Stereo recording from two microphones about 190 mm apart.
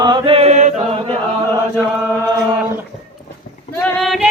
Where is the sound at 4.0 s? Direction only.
Centre (ahead or behind).